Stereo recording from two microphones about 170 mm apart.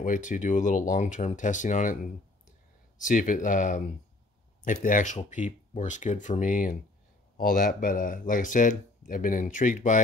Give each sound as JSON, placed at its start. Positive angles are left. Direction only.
{"t": 0.0, "sound": "speech", "side_deg": 50}
{"t": 3.0, "sound": "speech", "side_deg": 50}